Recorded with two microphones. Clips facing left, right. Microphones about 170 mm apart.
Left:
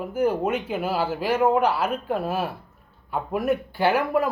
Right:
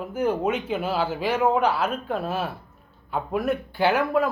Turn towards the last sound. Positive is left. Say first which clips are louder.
# even
turn(degrees=10)  # may be behind; listen again after turning